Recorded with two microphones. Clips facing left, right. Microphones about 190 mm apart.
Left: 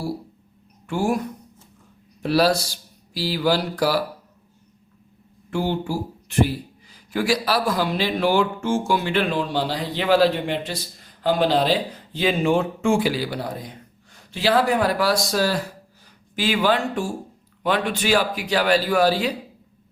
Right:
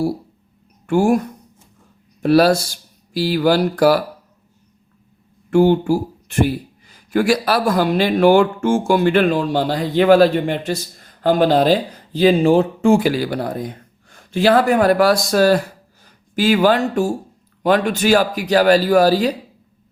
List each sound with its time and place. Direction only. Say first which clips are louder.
0.9 s speech: right 7 dB; 50° right (ahead or behind)
2.2 s speech: right 6 dB; 50° right (ahead or behind)
5.5 s speech: right 11 dB; 50° right (ahead or behind)
16.3 s speech: right 6 dB; 45° right (ahead or behind)